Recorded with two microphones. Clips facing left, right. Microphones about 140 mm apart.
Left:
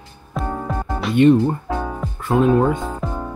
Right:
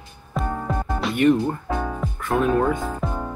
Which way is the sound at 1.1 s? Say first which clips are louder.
Left 5 dB; 25° left (ahead or behind).